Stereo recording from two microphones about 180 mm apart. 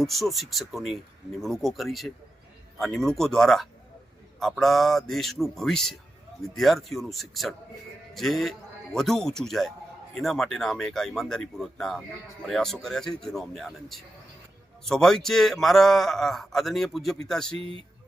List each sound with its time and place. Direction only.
0.0 s a man's voice: centre (ahead or behind)